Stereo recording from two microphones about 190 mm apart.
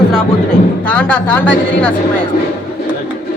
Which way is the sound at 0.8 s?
10° left (ahead or behind).